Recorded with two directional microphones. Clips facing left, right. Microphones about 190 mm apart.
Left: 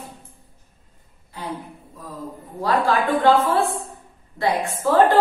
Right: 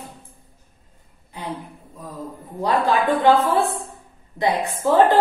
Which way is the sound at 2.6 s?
20° right (ahead or behind).